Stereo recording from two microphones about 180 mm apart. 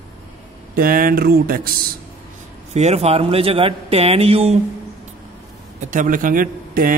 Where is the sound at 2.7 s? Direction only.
35° right (ahead or behind).